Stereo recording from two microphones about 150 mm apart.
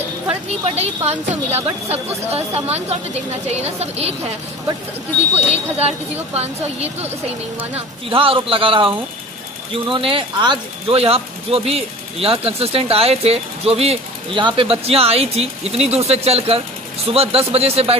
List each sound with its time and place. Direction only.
0.7 s a woman's voice: 45° right (ahead or behind)
5.3 s a woman's voice: 45° right (ahead or behind)